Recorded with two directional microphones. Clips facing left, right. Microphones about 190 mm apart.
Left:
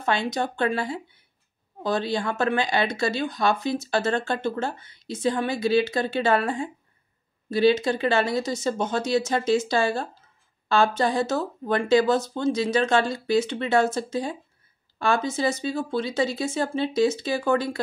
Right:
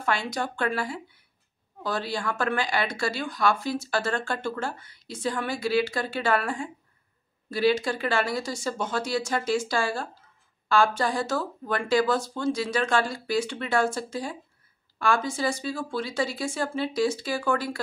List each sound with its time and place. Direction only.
0.0 s speech: 20° left (ahead or behind)